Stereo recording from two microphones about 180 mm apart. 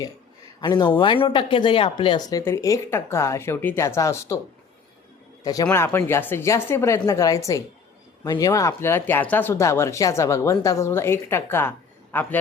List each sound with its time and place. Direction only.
0.6 s speech: 25° left (ahead or behind)
2.4 s speech: 15° left (ahead or behind)
5.4 s a man's voice: 20° left (ahead or behind)